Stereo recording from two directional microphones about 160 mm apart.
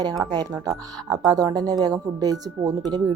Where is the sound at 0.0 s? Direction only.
25° right (ahead or behind).